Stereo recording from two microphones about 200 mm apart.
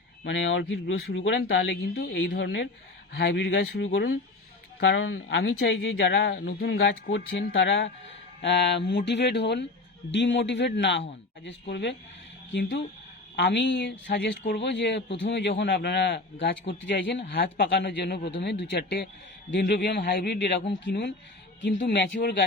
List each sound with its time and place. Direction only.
0.3 s a man's voice: 70° left (ahead or behind)
13.3 s a man's voice: 60° left (ahead or behind)
17.2 s a man's voice: 50° left (ahead or behind)